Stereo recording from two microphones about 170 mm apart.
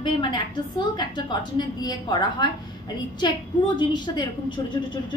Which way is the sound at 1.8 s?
25° left (ahead or behind).